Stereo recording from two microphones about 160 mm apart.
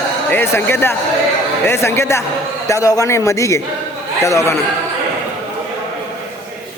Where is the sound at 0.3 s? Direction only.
15° left (ahead or behind).